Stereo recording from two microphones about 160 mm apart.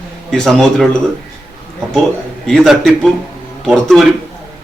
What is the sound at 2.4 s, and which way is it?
Speech, centre (ahead or behind).